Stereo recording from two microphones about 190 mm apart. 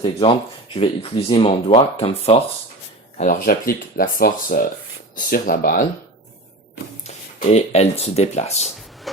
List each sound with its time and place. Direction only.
0.0 s speech: 25° left (ahead or behind)
3.2 s speech: 45° left (ahead or behind)
7.1 s speech: 35° left (ahead or behind)